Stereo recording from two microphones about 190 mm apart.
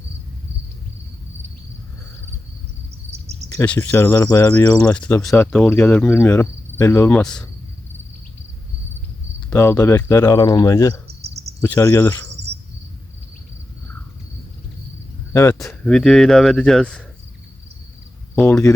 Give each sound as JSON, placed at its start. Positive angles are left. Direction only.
{"t": 3.1, "sound": "cricket", "side_deg": -35}
{"t": 3.5, "sound": "speech", "side_deg": 10}
{"t": 9.5, "sound": "speech", "side_deg": 15}
{"t": 15.3, "sound": "speech", "side_deg": 15}
{"t": 15.5, "sound": "speech", "side_deg": 0}
{"t": 18.3, "sound": "speech", "side_deg": 10}